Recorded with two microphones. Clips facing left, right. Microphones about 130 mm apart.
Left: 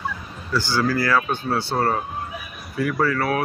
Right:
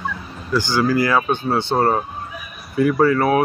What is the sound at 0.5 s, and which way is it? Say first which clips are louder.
Speech: right 4 dB; 15° right (ahead or behind).